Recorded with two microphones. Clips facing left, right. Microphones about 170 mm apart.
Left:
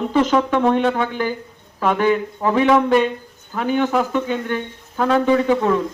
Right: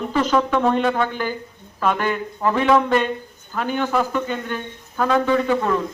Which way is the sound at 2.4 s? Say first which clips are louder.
Left 2 dB; 15° left (ahead or behind).